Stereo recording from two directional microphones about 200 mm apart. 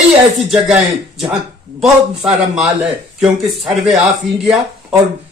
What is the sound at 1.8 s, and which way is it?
A man's voice, 5° right (ahead or behind).